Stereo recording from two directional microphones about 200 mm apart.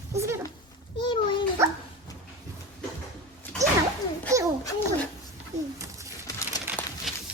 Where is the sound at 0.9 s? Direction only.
25° left (ahead or behind).